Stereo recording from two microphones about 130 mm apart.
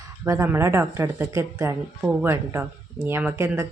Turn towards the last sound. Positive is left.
turn(degrees=-20)  # may be behind; listen again after turning